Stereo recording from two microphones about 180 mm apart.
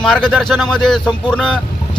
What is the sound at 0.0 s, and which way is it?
Speech, 5° left (ahead or behind).